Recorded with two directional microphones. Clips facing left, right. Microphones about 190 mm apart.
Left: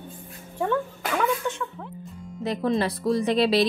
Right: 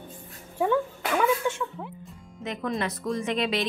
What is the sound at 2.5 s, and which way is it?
A woman's voice, 35° left (ahead or behind).